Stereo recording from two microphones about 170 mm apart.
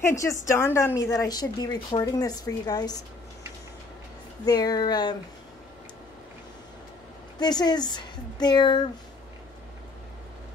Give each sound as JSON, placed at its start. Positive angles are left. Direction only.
{"t": 0.0, "sound": "a woman's voice", "side_deg": 15}
{"t": 4.5, "sound": "a woman's voice", "side_deg": 25}
{"t": 7.3, "sound": "a woman's voice", "side_deg": 25}